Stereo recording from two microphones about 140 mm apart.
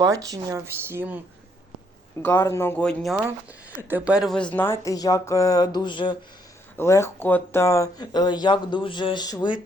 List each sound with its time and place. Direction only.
0.0 s speech: 25° right (ahead or behind)
2.2 s speech: 20° left (ahead or behind)
2.8 s speech: centre (ahead or behind)
3.8 s speech: 15° right (ahead or behind)
4.5 s speech: 15° left (ahead or behind); by 6.1 s 35° left (ahead or behind)
6.7 s speech: 20° left (ahead or behind)